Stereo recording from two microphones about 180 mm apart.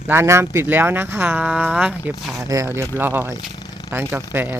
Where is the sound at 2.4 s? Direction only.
20° right (ahead or behind).